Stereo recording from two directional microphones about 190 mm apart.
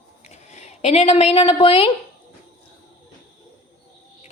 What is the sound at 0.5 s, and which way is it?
Speech, 35° left (ahead or behind).